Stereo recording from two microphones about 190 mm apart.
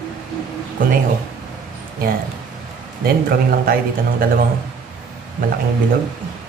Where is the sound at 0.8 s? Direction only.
45° right (ahead or behind).